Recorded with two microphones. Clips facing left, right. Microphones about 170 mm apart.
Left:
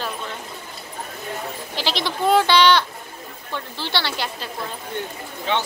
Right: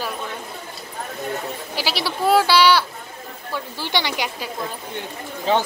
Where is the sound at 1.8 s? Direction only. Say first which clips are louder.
Even; 10° right (ahead or behind).